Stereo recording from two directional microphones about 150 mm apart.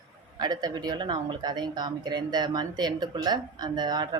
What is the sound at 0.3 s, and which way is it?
Speech, 25° right (ahead or behind).